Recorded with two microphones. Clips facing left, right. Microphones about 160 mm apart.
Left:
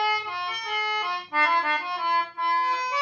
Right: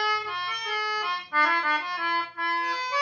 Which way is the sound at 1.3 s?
25° left (ahead or behind).